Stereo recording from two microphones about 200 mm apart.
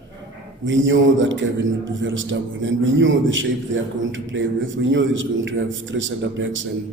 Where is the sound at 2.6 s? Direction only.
70° right (ahead or behind).